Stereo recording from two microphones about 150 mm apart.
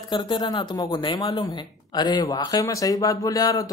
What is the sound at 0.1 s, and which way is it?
A man's voice, 30° left (ahead or behind).